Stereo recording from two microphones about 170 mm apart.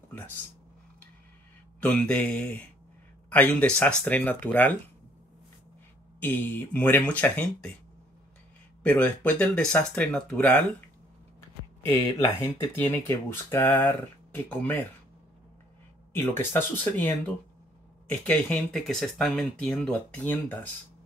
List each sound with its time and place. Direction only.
1.8 s speech: 10° left (ahead or behind)
6.1 s speech: 10° left (ahead or behind)
8.8 s speech: 10° left (ahead or behind)
11.9 s speech: 25° left (ahead or behind)
16.1 s speech: 15° left (ahead or behind)